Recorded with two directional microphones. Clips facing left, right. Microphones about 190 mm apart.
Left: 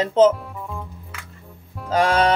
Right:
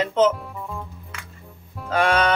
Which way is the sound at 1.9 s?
35° left (ahead or behind).